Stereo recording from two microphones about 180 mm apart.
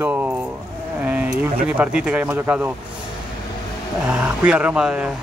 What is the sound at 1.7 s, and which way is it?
Speech, 5° right (ahead or behind).